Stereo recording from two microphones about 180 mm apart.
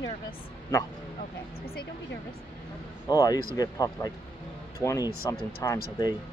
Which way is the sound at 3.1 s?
20° left (ahead or behind).